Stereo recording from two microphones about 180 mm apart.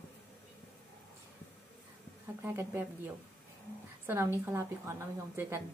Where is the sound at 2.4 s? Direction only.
15° right (ahead or behind).